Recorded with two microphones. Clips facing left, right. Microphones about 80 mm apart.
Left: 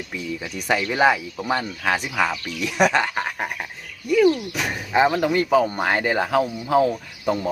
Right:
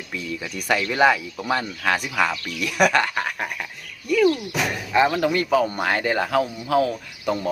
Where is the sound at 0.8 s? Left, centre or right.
Centre.